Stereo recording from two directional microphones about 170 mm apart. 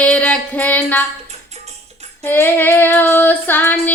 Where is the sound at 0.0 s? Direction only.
5° left (ahead or behind).